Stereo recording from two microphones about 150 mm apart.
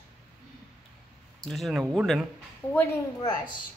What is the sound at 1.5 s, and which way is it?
Speech, centre (ahead or behind).